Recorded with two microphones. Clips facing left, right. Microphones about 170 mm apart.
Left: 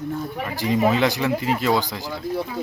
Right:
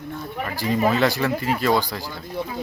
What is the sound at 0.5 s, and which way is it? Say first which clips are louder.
Speech: left 1 dB; 15° left (ahead or behind).